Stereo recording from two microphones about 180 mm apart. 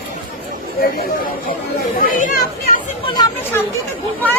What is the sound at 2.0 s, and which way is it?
Speech, 50° left (ahead or behind).